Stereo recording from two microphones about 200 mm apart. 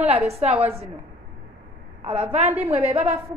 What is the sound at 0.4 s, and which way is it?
Speech, 35° right (ahead or behind).